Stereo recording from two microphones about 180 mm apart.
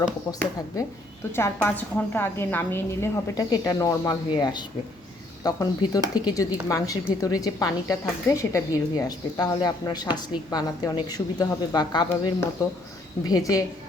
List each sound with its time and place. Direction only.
1.4 s a woman's voice: 10° left (ahead or behind)